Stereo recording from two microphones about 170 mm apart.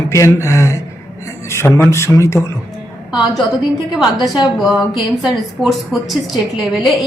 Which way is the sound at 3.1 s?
Centre (ahead or behind).